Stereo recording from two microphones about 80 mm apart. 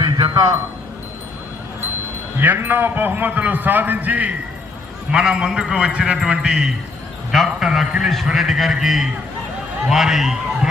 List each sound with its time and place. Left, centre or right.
0.0 s a sound: right
2.4 s a man's voice: right
5.1 s a man's voice: centre